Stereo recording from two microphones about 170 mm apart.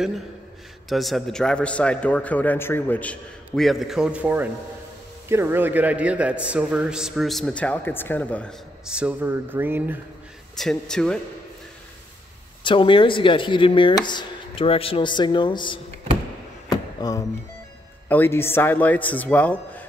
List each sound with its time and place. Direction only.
0.8 s a man's voice: centre (ahead or behind)
8.8 s a sound: 5° right (ahead or behind)
10.6 s a man's voice: 5° left (ahead or behind)
12.6 s speech: 30° left (ahead or behind)
16.6 s a sound: 20° left (ahead or behind)
18.0 s speech: 10° left (ahead or behind)